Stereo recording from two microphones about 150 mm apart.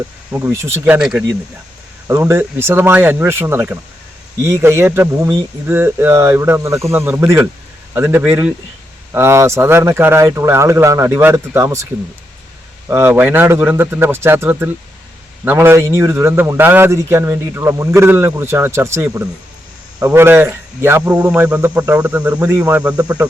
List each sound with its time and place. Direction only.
0.3 s a man's voice: 15° right (ahead or behind)
0.9 s speech: 5° right (ahead or behind)
2.0 s a man's voice: 15° right (ahead or behind)
12.9 s a man's voice: 15° right (ahead or behind)